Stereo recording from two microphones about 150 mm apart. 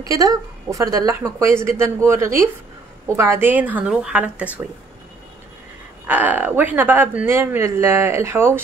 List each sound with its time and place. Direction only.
0.0 s speech: 25° right (ahead or behind)
6.0 s speech: 10° right (ahead or behind)